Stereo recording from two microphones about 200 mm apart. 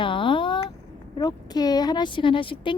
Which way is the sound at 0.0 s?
25° left (ahead or behind).